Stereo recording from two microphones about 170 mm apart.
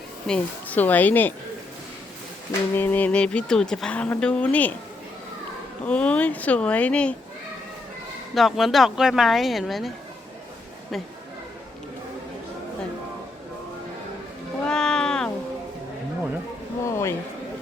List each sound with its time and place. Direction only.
0.3 s speech: 10° left (ahead or behind)
2.5 s speech: 10° left (ahead or behind)
5.8 s speech: 5° left (ahead or behind)
8.4 s a woman's voice: centre (ahead or behind)
14.7 s cat: 5° left (ahead or behind)
16.8 s a sound: 15° left (ahead or behind)